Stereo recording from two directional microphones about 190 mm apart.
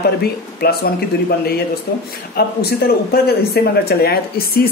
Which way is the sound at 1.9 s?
60° left (ahead or behind).